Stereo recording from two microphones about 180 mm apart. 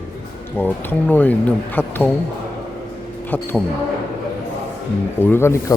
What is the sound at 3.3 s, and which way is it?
Speech, 10° left (ahead or behind).